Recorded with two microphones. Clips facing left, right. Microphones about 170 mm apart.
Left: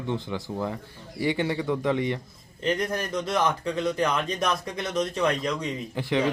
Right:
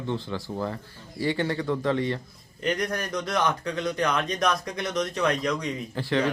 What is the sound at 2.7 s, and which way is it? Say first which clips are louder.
Speech: left 1 dB; 5° left (ahead or behind).